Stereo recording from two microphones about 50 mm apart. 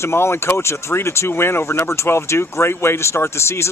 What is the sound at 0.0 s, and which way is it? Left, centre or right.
Speech, left.